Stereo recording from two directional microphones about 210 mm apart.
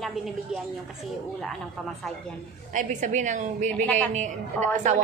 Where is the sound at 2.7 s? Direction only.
35° right (ahead or behind).